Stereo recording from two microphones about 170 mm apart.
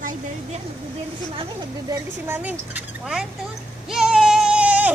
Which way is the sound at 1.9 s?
10° right (ahead or behind).